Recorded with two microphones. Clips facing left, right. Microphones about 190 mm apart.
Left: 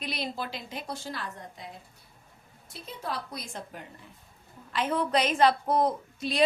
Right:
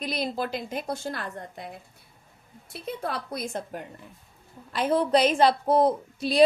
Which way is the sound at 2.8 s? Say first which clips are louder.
Right 4 dB; 60° right (ahead or behind).